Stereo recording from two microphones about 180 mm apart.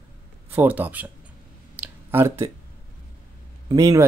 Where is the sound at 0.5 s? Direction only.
10° right (ahead or behind).